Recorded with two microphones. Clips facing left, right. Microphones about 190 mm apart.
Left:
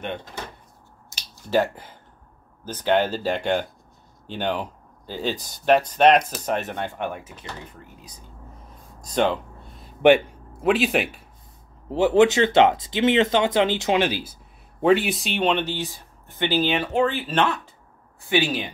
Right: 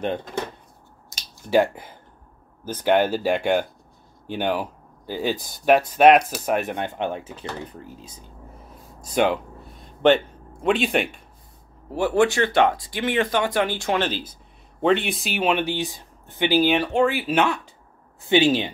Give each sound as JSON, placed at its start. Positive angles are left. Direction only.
{"t": 1.3, "sound": "speech", "side_deg": -10}
{"t": 9.0, "sound": "speech", "side_deg": -10}
{"t": 10.0, "sound": "speech", "side_deg": 10}
{"t": 11.9, "sound": "speech", "side_deg": 20}
{"t": 18.3, "sound": "speech", "side_deg": -25}